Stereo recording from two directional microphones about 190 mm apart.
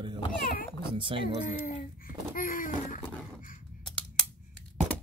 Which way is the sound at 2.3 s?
45° left (ahead or behind).